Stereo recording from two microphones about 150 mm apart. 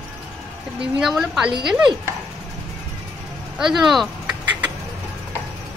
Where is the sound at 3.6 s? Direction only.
5° right (ahead or behind).